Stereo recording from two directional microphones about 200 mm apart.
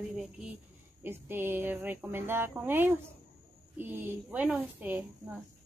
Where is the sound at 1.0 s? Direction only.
10° right (ahead or behind).